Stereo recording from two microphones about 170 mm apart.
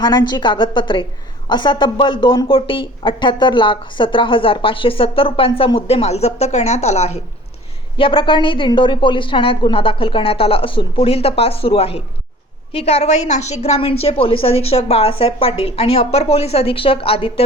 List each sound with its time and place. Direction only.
0.0 s a woman's voice: 25° left (ahead or behind); by 7.2 s 40° left (ahead or behind)
7.9 s a woman's voice: 30° left (ahead or behind)